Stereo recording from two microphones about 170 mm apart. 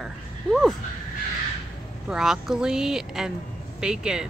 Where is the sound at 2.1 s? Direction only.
5° right (ahead or behind).